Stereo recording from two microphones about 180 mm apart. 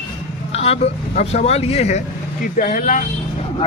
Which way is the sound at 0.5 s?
35° left (ahead or behind).